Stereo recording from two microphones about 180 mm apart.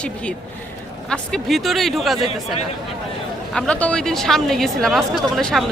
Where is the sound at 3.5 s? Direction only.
5° left (ahead or behind).